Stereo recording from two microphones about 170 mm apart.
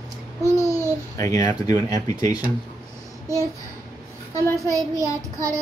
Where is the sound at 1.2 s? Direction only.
20° left (ahead or behind).